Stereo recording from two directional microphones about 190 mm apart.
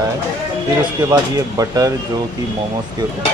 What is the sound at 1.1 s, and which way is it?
Speech, 20° right (ahead or behind).